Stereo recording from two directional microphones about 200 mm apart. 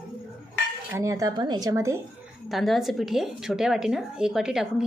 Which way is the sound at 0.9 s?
15° right (ahead or behind).